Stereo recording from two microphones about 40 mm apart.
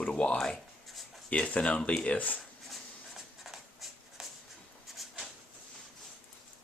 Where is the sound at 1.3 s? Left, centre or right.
Left.